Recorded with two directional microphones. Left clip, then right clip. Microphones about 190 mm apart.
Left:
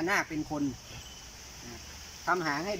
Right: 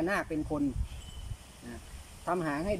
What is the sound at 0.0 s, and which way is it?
Speech, 20° right (ahead or behind).